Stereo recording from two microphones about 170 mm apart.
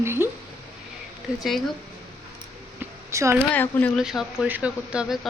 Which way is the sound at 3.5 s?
10° left (ahead or behind).